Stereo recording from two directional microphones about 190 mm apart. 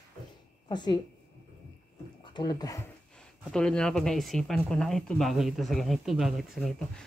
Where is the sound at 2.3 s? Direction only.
20° left (ahead or behind).